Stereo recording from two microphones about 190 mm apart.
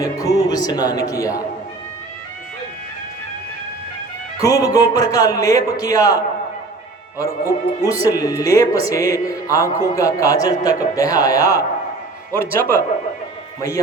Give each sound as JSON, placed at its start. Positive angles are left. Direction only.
{"t": 0.0, "sound": "speech", "side_deg": 20}
{"t": 4.4, "sound": "speech", "side_deg": 20}